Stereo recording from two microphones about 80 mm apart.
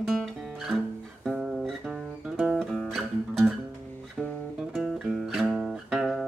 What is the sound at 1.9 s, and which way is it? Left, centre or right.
Music, centre.